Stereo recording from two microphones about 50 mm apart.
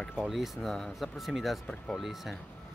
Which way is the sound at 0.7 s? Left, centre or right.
Centre.